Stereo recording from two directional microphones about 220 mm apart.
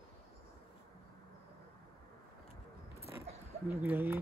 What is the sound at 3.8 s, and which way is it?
Speech, 10° right (ahead or behind).